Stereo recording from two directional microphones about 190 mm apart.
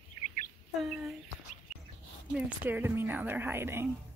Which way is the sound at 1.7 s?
5° right (ahead or behind).